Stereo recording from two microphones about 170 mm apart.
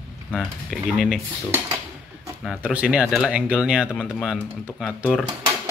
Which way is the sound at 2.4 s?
10° right (ahead or behind).